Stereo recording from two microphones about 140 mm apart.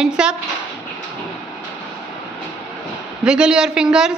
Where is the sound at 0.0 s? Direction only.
5° right (ahead or behind).